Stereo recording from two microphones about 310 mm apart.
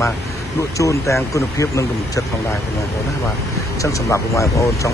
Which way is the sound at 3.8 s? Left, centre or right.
Centre.